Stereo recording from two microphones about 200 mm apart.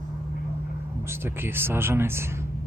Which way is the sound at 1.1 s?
10° right (ahead or behind).